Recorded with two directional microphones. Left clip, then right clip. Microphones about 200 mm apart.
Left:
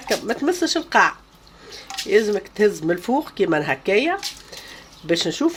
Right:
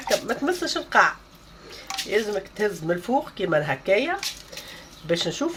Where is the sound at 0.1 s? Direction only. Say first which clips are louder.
Left 2 dB; 35° left (ahead or behind).